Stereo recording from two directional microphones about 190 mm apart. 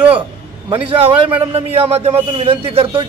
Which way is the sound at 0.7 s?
30° right (ahead or behind).